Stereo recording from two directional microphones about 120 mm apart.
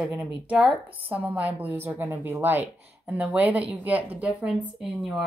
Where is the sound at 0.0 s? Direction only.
5° right (ahead or behind).